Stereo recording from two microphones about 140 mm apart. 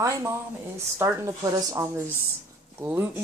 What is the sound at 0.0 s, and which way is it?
Speech, 20° right (ahead or behind).